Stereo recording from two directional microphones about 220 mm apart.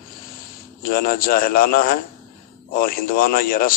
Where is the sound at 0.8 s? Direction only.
40° left (ahead or behind).